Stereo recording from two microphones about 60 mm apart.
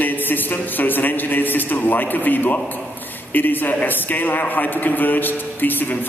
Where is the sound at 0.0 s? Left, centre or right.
Left.